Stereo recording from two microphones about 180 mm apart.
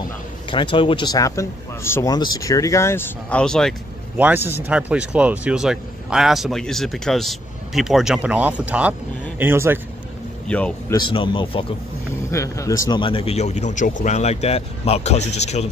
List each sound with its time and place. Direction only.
0.5 s speech: 25° left (ahead or behind); by 3.7 s 5° left (ahead or behind)
4.2 s speech: 10° right (ahead or behind)
10.4 s a man's voice: 5° left (ahead or behind)
10.9 s a man's voice: 25° left (ahead or behind)
12.3 s speech: 15° left (ahead or behind); by 15.7 s 40° left (ahead or behind)